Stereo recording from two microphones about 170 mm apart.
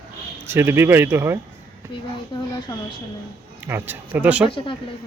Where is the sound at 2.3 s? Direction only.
25° left (ahead or behind).